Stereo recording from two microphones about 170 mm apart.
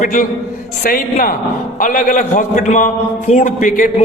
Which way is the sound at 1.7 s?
50° left (ahead or behind).